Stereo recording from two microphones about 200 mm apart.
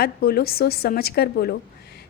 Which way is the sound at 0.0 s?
50° left (ahead or behind).